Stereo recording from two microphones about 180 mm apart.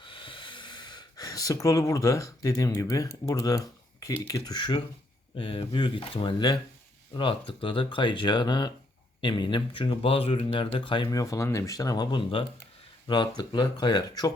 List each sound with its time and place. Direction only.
0.0 s speech: 30° left (ahead or behind)